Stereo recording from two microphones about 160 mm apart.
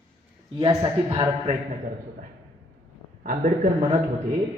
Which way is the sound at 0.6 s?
30° right (ahead or behind).